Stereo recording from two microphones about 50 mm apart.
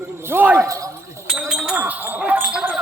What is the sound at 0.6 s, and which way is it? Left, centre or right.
Speech, right.